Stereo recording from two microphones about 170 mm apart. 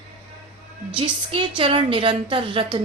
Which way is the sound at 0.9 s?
30° right (ahead or behind).